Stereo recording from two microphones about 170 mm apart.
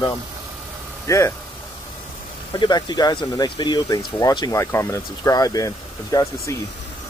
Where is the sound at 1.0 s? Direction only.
15° left (ahead or behind).